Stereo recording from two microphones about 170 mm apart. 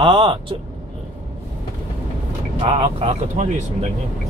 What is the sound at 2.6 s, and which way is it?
Speech, 35° right (ahead or behind).